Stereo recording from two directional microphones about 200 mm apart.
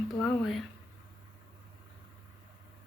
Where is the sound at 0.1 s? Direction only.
Centre (ahead or behind).